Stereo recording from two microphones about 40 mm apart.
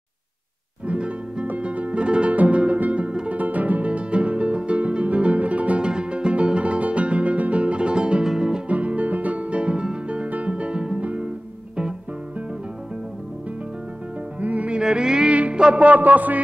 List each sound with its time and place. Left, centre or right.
0.8 s music: right
5.9 s music: right
8.6 s music: right
11.0 s music: right
14.4 s music: right
14.8 s music: centre
15.8 s music: right